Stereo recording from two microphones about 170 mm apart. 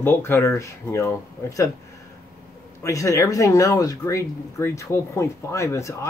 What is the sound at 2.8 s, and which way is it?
Speech, 20° left (ahead or behind).